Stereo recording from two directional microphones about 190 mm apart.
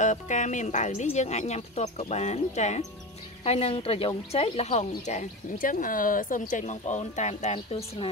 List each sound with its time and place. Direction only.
0.0 s a woman's voice: 40° left (ahead or behind)